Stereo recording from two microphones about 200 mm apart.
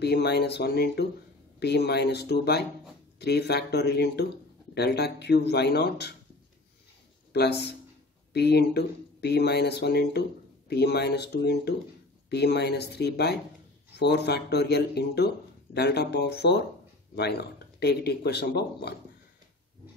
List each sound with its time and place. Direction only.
0.0 s speech: 55° left (ahead or behind)
7.3 s speech: 55° left (ahead or behind)